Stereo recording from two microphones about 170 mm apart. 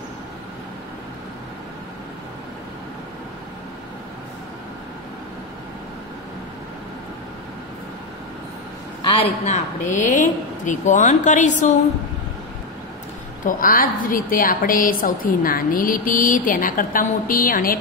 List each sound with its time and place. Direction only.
9.0 s a woman's voice: 40° left (ahead or behind)
13.5 s a woman's voice: 55° left (ahead or behind)